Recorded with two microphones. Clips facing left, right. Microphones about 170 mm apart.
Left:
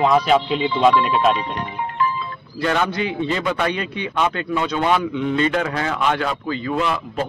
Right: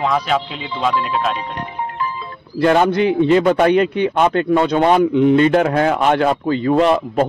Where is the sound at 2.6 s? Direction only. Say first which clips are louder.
Right 7 dB; 45° right (ahead or behind).